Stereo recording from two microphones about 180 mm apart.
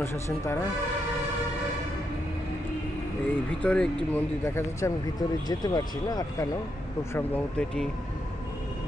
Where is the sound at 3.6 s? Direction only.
5° left (ahead or behind).